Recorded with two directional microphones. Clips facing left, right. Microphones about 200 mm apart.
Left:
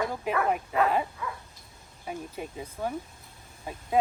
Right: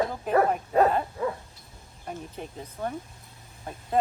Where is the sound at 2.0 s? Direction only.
5° left (ahead or behind).